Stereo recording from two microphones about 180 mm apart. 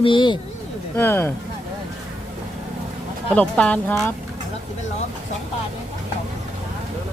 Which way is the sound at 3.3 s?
5° left (ahead or behind).